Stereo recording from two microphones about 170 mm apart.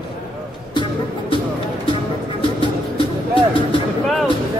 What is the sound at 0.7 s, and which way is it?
Music, 30° left (ahead or behind).